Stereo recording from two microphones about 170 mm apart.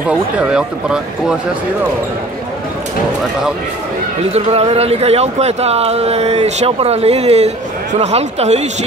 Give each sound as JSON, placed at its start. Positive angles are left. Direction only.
{"t": 0.4, "sound": "speech", "side_deg": -5}
{"t": 4.3, "sound": "speech", "side_deg": -35}